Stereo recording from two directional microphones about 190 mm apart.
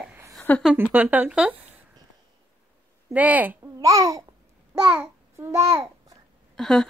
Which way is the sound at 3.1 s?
10° right (ahead or behind).